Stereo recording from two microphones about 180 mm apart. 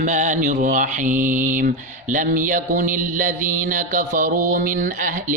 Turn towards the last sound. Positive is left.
turn(degrees=-45)  # may be behind; listen again after turning